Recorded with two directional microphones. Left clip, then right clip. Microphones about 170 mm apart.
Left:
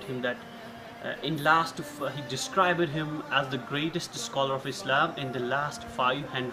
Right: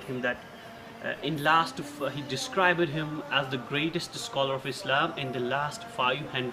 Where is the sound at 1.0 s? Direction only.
Centre (ahead or behind).